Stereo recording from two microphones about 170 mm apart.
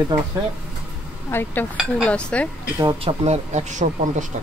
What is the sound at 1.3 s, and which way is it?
Speech, 10° left (ahead or behind).